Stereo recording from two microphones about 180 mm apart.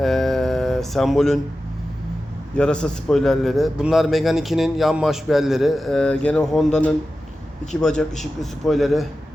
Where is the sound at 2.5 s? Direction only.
5° left (ahead or behind).